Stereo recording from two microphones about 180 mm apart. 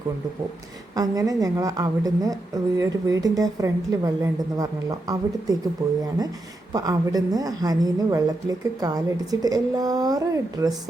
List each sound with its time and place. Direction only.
0.9 s a woman's voice: 20° right (ahead or behind)
6.7 s a woman's voice: 20° right (ahead or behind)